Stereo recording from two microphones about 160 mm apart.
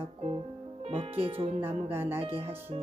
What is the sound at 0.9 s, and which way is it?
Speech, 40° right (ahead or behind).